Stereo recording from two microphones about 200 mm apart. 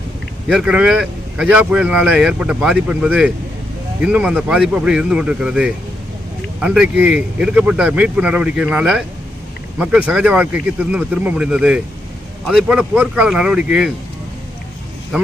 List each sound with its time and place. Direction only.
0.4 s speech: 5° right (ahead or behind)
15.1 s speech: 5° right (ahead or behind)